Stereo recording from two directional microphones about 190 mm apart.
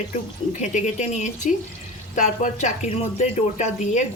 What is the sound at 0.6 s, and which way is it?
Speech, 40° left (ahead or behind).